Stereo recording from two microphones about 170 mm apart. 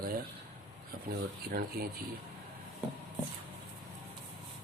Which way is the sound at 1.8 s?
60° right (ahead or behind).